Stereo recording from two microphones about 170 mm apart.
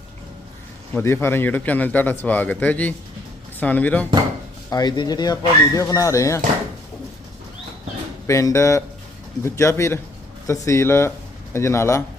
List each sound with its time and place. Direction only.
0.9 s a man's voice: 15° left (ahead or behind)
4.7 s speech: 25° left (ahead or behind)
8.3 s a man's voice: 15° left (ahead or behind)